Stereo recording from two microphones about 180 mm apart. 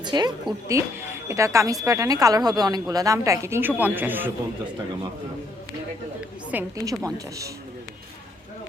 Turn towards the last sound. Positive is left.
turn(degrees=-15)  # may be behind; listen again after turning